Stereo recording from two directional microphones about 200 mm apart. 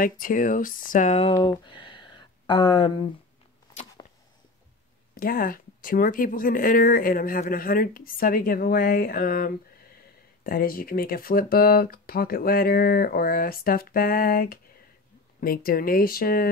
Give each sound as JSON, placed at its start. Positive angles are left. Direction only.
{"t": 0.0, "sound": "speech", "side_deg": 45}
{"t": 1.3, "sound": "speech", "side_deg": 25}
{"t": 4.0, "sound": "a sound", "side_deg": 20}
{"t": 5.1, "sound": "speech", "side_deg": 45}